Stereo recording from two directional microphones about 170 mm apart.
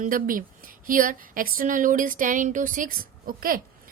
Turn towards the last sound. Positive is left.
turn(degrees=-55)  # may be behind; listen again after turning